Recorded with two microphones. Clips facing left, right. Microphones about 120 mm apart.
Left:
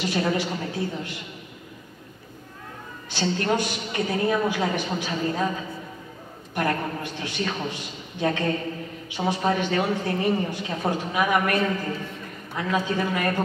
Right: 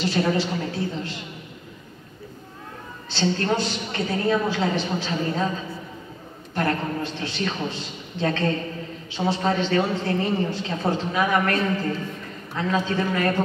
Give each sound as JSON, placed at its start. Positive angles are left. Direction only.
{"t": 0.0, "sound": "a woman's voice", "side_deg": 15}
{"t": 3.1, "sound": "a woman's voice", "side_deg": 15}
{"t": 6.5, "sound": "a woman's voice", "side_deg": 15}
{"t": 12.5, "sound": "a woman's voice", "side_deg": 15}